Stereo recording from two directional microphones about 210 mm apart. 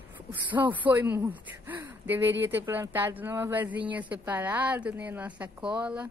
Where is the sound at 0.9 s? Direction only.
10° right (ahead or behind).